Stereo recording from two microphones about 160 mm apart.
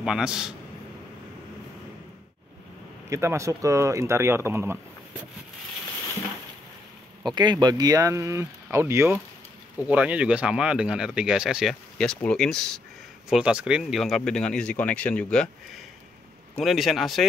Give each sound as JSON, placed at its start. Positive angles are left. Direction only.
{"t": 0.0, "sound": "speech", "side_deg": -5}
{"t": 3.1, "sound": "speech", "side_deg": -15}
{"t": 7.2, "sound": "speech", "side_deg": -25}
{"t": 16.5, "sound": "speech", "side_deg": 0}